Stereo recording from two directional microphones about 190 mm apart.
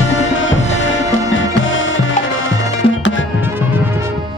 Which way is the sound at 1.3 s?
90° left.